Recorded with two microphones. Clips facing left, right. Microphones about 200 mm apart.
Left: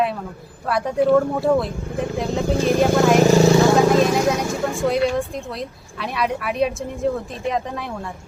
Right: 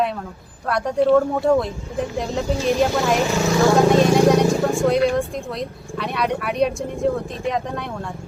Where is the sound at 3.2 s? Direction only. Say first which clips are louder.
Left 7 dB; 40° left (ahead or behind).